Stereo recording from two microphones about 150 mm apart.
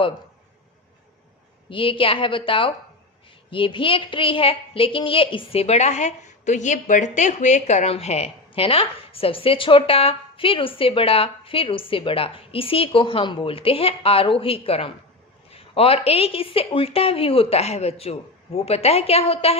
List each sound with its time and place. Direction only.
1.7 s a woman's voice: 35° left (ahead or behind)